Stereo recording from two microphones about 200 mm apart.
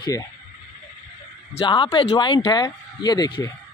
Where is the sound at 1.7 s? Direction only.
25° left (ahead or behind).